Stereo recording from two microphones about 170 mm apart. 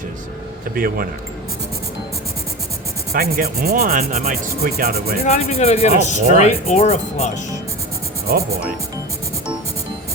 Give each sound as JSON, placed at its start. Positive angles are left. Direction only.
{"t": 0.7, "sound": "speech", "side_deg": -60}
{"t": 3.1, "sound": "speech", "side_deg": -65}
{"t": 5.2, "sound": "speech", "side_deg": 35}